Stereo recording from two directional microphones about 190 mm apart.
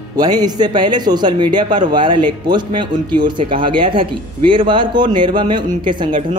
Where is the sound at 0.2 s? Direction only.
20° right (ahead or behind).